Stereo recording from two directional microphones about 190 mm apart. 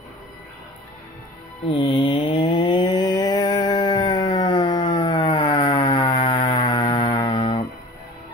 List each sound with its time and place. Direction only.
1.7 s mantra: 30° left (ahead or behind)
7.2 s music: 25° left (ahead or behind)